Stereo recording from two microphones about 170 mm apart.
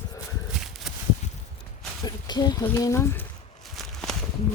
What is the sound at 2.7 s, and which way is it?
Speech, 15° left (ahead or behind).